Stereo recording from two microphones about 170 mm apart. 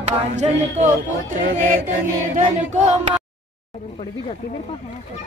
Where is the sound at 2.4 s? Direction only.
45° right (ahead or behind).